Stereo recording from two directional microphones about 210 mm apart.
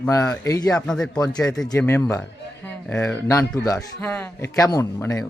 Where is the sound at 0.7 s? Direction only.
5° left (ahead or behind).